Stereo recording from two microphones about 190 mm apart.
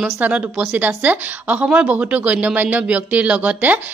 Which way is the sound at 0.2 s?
10° right (ahead or behind).